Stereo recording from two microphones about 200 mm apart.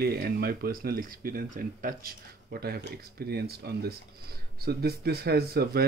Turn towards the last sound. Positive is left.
turn(degrees=-50)  # may be behind; listen again after turning